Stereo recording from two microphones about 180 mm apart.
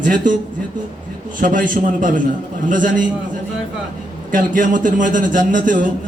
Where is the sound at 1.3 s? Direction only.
50° right (ahead or behind).